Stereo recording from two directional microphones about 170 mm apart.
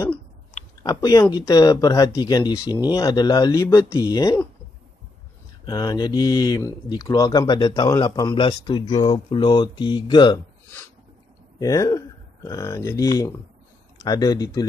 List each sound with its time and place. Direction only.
0.8 s speech: 20° left (ahead or behind)
5.7 s speech: 25° left (ahead or behind)
11.6 s speech: 20° left (ahead or behind)